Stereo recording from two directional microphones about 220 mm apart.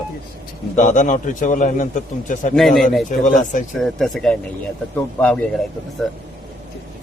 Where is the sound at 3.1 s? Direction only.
35° left (ahead or behind).